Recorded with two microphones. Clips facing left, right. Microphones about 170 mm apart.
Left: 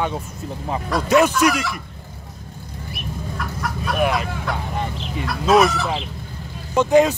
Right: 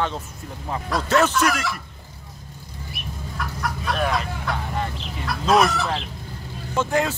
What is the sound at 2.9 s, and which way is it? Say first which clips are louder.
Chicken: left 5 dB; centre (ahead or behind).